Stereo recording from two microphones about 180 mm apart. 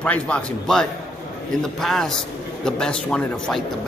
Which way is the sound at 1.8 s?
Centre (ahead or behind).